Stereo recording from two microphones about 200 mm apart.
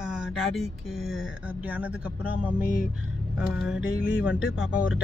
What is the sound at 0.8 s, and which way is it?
Speech, 80° left.